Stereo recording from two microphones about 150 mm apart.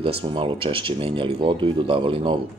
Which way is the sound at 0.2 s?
35° right (ahead or behind).